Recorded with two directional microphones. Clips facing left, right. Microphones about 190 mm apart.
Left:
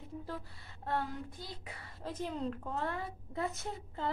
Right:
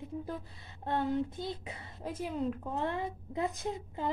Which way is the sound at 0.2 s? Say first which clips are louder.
Right 3 dB; 20° right (ahead or behind).